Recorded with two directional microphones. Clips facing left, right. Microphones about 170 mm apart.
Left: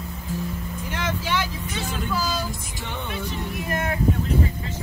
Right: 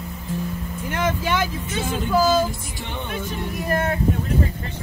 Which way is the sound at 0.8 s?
50° right (ahead or behind).